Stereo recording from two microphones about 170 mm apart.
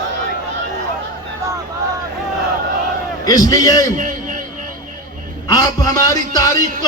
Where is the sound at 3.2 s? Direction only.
20° left (ahead or behind).